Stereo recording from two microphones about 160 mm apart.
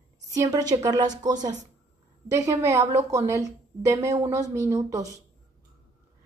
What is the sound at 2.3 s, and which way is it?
A woman's voice, 20° right (ahead or behind).